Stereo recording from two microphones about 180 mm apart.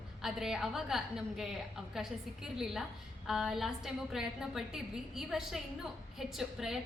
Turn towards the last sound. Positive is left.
turn(degrees=0)  # may be behind; listen again after turning